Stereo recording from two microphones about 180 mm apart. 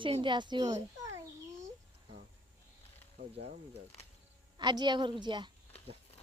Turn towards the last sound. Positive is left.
turn(degrees=-25)  # may be behind; listen again after turning